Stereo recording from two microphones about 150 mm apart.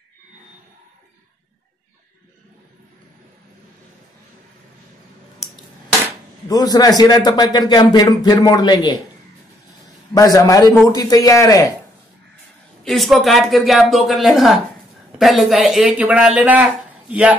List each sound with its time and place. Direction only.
6.5 s a man's voice: 25° left (ahead or behind)
10.1 s a man's voice: 25° left (ahead or behind)
12.8 s speech: centre (ahead or behind)